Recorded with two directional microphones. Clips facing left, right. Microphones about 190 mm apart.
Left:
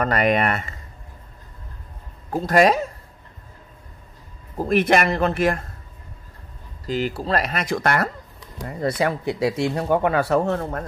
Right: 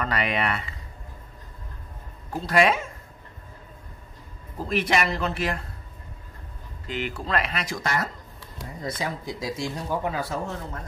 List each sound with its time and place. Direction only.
0.0 s speech: 45° left (ahead or behind)
2.3 s speech: 45° left (ahead or behind)
4.6 s speech: 50° left (ahead or behind)
6.9 s speech: 35° left (ahead or behind); by 10.9 s 60° left (ahead or behind)